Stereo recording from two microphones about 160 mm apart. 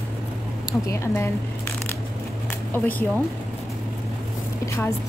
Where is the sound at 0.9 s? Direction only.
20° left (ahead or behind).